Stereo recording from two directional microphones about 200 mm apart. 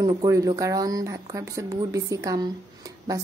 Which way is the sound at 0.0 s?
15° right (ahead or behind).